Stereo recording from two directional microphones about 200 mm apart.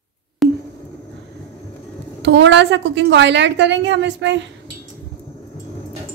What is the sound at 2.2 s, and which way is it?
A woman's voice, 65° right (ahead or behind).